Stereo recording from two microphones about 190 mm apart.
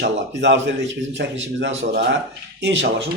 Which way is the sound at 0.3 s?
70° right (ahead or behind).